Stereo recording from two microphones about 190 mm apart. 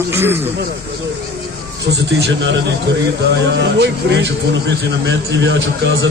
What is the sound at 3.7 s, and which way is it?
A man's voice, 65° right (ahead or behind).